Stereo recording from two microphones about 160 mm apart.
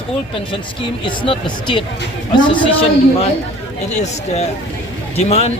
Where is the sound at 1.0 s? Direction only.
30° left (ahead or behind).